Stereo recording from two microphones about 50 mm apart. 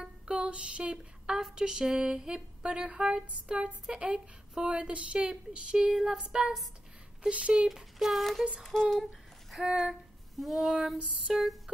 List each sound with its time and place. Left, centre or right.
0.0 s a sound: centre
3.4 s speech: centre
7.2 s speech: right
7.7 s child singing: centre
8.7 s speech: centre
9.8 s female singing: centre
11.3 s a sound: centre